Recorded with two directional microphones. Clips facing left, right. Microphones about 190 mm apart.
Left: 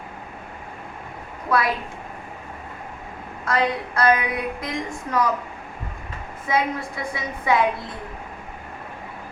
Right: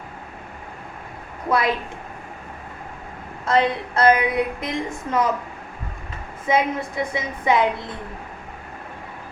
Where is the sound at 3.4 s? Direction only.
25° right (ahead or behind).